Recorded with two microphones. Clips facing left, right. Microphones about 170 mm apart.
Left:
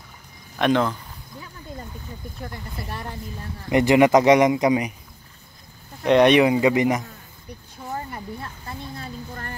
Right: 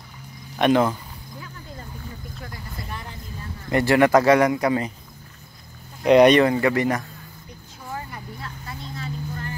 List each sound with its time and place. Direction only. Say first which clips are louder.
0.6 s speech: right 2 dB; 5° right (ahead or behind)
2.4 s speech: left 4 dB; 25° left (ahead or behind)
6.0 s speech: right 2 dB; 5° right (ahead or behind)
6.3 s speech: left 1 dB; 15° left (ahead or behind)
7.9 s a sound: left 3 dB; 30° left (ahead or behind)